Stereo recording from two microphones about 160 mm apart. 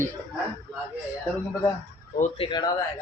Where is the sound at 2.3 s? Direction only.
35° left (ahead or behind).